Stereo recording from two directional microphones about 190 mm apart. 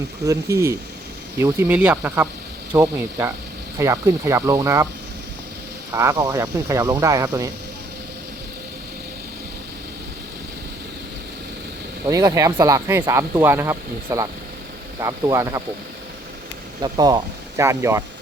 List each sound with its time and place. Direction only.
0.3 s speech: 15° right (ahead or behind)
5.9 s speech: 15° right (ahead or behind)
12.0 s speech: 20° right (ahead or behind)
16.8 s speech: 20° right (ahead or behind)